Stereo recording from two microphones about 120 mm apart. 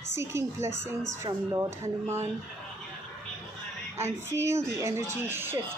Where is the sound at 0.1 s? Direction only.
25° right (ahead or behind).